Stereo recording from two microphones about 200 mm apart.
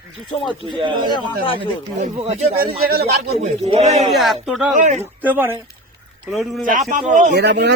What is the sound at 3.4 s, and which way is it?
Speech, 35° right (ahead or behind).